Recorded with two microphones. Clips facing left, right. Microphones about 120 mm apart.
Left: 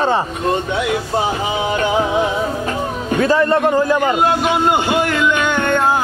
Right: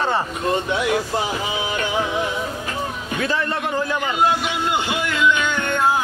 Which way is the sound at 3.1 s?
40° left (ahead or behind).